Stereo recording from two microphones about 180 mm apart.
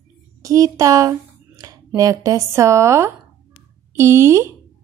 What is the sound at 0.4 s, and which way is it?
Speech, 20° right (ahead or behind).